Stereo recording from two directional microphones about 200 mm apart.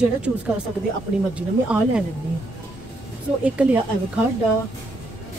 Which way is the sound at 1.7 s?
5° right (ahead or behind).